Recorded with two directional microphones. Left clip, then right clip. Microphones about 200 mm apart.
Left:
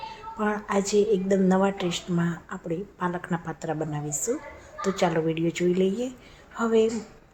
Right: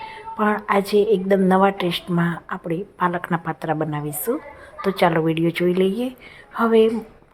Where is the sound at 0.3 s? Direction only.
20° right (ahead or behind).